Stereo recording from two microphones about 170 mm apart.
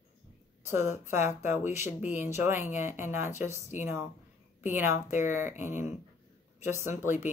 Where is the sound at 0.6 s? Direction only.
15° right (ahead or behind).